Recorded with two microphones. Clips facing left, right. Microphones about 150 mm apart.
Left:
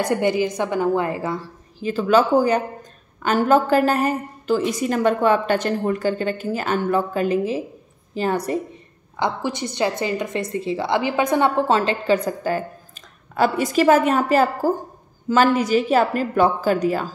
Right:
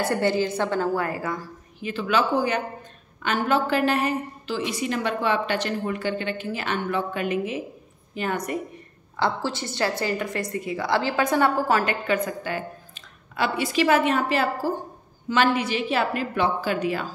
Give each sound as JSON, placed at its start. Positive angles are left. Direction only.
{"t": 0.1, "sound": "a woman's voice", "side_deg": 15}
{"t": 9.1, "sound": "a woman's voice", "side_deg": 20}